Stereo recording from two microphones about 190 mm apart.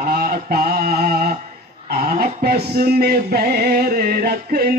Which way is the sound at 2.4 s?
55° right (ahead or behind).